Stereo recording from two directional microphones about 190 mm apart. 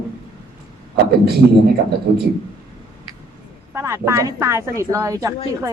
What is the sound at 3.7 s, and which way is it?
Speech, 15° right (ahead or behind).